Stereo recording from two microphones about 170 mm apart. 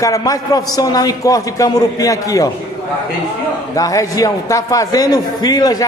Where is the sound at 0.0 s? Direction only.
20° left (ahead or behind).